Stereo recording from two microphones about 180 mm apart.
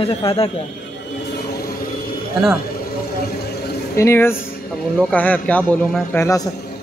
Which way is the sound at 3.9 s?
15° left (ahead or behind).